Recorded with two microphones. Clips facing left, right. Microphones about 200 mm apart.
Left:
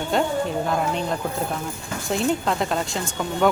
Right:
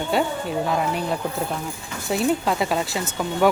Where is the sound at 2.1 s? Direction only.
5° right (ahead or behind).